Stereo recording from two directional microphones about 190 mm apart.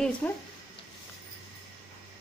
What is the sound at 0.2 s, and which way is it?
Speech, 10° left (ahead or behind).